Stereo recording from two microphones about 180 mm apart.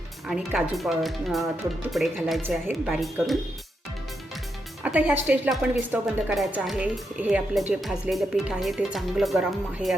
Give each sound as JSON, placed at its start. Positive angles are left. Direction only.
{"t": 0.3, "sound": "speech", "side_deg": -5}
{"t": 4.8, "sound": "a woman's voice", "side_deg": -5}